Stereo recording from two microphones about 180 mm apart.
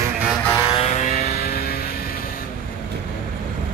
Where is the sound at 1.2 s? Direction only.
60° left (ahead or behind).